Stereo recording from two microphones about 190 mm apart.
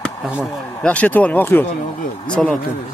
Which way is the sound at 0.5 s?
15° left (ahead or behind).